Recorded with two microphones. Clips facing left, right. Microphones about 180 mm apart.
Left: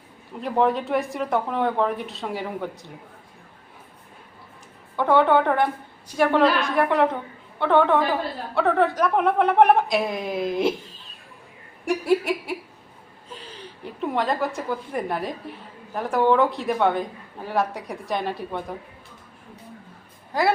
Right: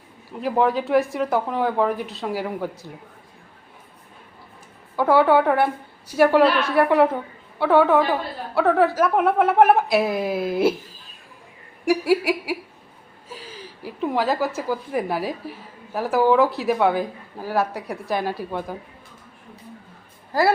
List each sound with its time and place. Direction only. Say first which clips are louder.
0.4 s a woman's voice: right 1 dB; centre (ahead or behind)
4.9 s a woman's voice: right 2 dB; 5° right (ahead or behind)
11.9 s a woman's voice: right 2 dB; 5° right (ahead or behind)
20.3 s a woman's voice: right 3 dB; centre (ahead or behind)